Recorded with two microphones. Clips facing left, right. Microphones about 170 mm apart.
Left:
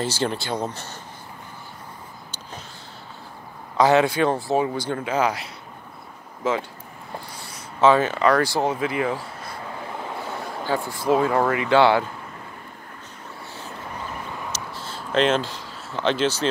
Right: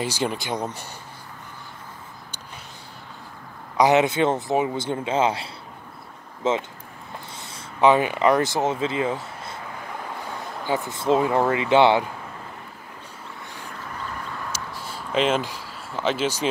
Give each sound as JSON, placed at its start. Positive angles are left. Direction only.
{"t": 0.0, "sound": "speech", "side_deg": -10}
{"t": 3.7, "sound": "speech", "side_deg": -20}
{"t": 10.9, "sound": "speech", "side_deg": -25}
{"t": 14.5, "sound": "a sound", "side_deg": -10}